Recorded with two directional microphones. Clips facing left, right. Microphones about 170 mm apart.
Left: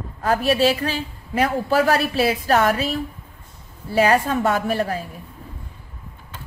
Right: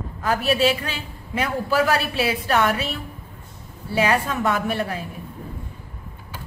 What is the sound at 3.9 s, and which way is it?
A woman's voice, 35° left (ahead or behind).